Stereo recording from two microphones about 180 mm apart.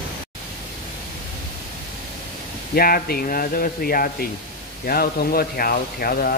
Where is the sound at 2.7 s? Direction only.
55° left (ahead or behind).